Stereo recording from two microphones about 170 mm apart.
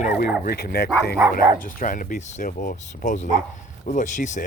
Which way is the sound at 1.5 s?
55° left (ahead or behind).